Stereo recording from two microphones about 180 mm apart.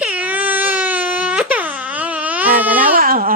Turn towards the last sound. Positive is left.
turn(degrees=-55)  # may be behind; listen again after turning